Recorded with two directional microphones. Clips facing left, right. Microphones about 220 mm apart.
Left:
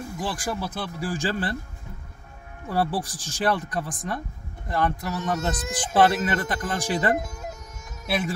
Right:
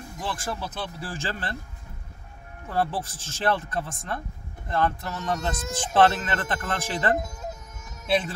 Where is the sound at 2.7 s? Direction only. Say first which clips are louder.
Left 2 dB; 15° left (ahead or behind).